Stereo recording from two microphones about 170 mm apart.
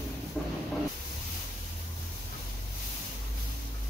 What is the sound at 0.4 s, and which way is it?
Train, centre (ahead or behind).